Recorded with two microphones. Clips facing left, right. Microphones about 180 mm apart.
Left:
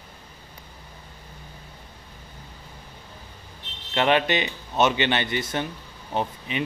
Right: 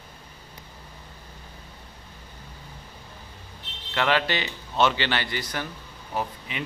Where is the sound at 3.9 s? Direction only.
20° left (ahead or behind).